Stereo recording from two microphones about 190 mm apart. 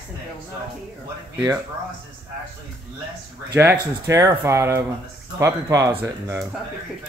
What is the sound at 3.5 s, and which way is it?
Speech, 10° right (ahead or behind).